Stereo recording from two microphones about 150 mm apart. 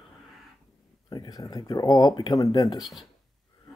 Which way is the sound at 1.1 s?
25° left (ahead or behind).